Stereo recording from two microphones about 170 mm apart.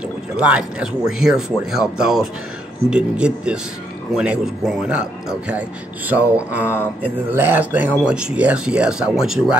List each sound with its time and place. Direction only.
0.4 s speech: 5° right (ahead or behind)